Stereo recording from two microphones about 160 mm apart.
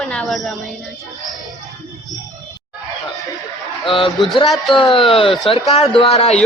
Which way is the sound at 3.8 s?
35° left (ahead or behind).